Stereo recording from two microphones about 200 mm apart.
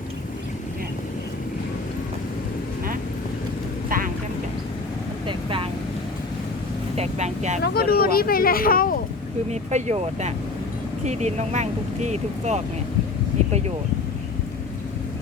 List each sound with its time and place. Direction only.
3.8 s vehicle: 45° right (ahead or behind)
5.2 s vehicle: 25° right (ahead or behind)
6.9 s speech: 35° right (ahead or behind)
7.6 s speech: 50° left (ahead or behind)
9.5 s speech: 35° right (ahead or behind)